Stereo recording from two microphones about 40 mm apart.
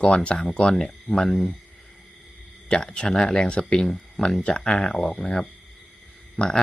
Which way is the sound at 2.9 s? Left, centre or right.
Centre.